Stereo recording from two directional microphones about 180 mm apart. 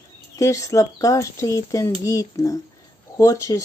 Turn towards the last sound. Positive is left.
turn(degrees=20)  # may be behind; listen again after turning